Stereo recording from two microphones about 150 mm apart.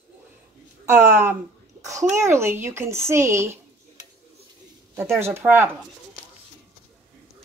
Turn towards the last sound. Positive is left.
turn(degrees=-15)  # may be behind; listen again after turning